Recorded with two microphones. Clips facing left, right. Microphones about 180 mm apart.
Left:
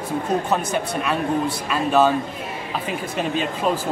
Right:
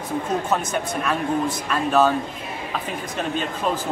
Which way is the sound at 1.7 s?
5° left (ahead or behind).